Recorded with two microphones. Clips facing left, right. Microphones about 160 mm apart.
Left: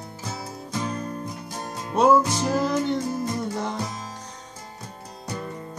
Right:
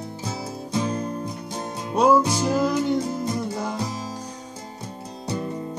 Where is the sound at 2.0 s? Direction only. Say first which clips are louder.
Even; centre (ahead or behind).